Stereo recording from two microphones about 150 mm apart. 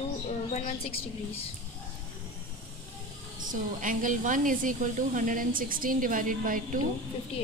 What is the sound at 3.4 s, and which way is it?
A woman's voice, 60° right (ahead or behind).